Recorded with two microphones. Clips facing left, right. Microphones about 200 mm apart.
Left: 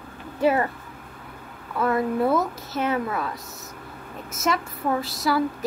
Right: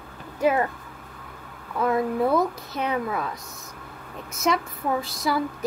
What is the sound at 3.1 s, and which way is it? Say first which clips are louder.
A woman's voice: even; centre (ahead or behind).